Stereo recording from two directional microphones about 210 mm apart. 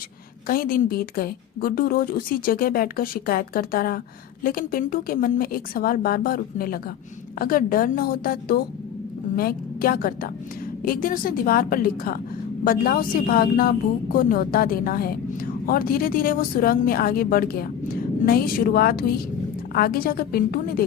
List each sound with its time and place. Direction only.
0.4 s a woman's voice: 45° left (ahead or behind)